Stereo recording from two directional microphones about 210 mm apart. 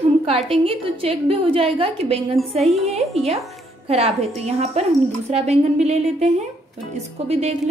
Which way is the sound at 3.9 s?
30° right (ahead or behind).